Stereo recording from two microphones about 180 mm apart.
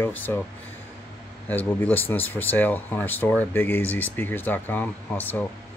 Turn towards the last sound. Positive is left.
turn(degrees=10)  # may be behind; listen again after turning